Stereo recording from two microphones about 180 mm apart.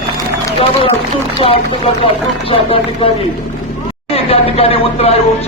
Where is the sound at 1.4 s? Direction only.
30° left (ahead or behind).